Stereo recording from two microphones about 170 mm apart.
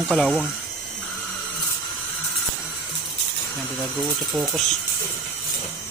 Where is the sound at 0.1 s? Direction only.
Centre (ahead or behind).